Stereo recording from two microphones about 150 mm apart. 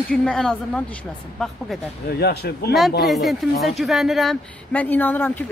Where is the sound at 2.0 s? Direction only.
90° left.